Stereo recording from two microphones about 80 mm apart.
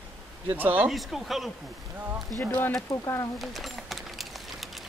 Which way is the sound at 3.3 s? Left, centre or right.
Centre.